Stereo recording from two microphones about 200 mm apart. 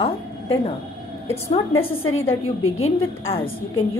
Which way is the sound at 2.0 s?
90° left.